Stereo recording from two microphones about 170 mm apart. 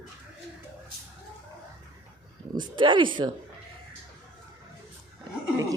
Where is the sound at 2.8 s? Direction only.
30° right (ahead or behind).